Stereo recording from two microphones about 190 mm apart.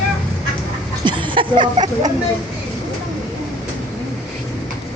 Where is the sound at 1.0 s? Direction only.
25° right (ahead or behind).